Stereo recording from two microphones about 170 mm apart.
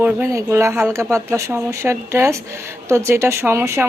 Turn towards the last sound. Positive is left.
turn(degrees=-15)  # may be behind; listen again after turning